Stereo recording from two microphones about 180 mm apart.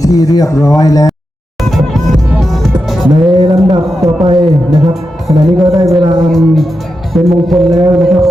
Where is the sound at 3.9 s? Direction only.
Centre (ahead or behind).